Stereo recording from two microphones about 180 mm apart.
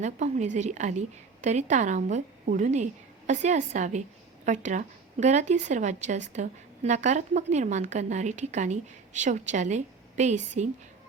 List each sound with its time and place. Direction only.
0.0 s a woman's voice: 40° right (ahead or behind)